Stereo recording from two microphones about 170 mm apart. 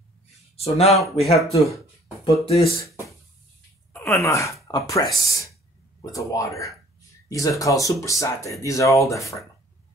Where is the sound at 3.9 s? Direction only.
15° left (ahead or behind).